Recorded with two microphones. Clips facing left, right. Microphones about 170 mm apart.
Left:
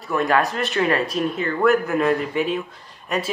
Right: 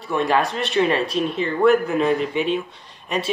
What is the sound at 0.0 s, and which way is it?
Speech, 30° right (ahead or behind).